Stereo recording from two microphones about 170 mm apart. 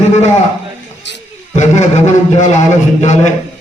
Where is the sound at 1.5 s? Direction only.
45° left (ahead or behind).